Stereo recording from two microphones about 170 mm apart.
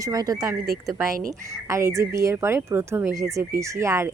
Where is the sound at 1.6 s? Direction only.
15° right (ahead or behind).